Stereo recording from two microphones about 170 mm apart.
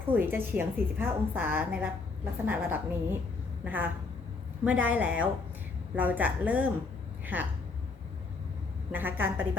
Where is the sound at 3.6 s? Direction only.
10° right (ahead or behind).